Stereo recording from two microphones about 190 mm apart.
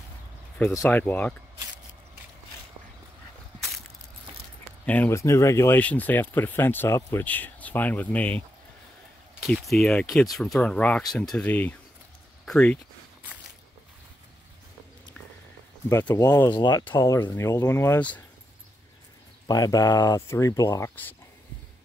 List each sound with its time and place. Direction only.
0.6 s speech: 10° left (ahead or behind)
4.8 s speech: 10° left (ahead or behind)
9.5 s speech: centre (ahead or behind)
15.9 s speech: 10° left (ahead or behind)
19.4 s speech: 20° left (ahead or behind)